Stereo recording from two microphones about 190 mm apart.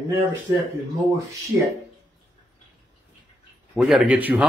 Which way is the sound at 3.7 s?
5° right (ahead or behind).